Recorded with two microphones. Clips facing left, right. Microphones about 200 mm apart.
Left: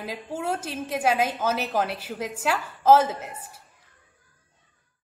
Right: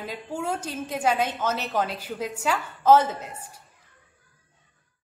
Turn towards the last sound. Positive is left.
turn(degrees=10)  # may be behind; listen again after turning